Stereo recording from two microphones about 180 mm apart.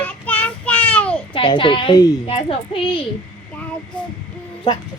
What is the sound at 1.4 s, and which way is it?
Speech, 30° left (ahead or behind).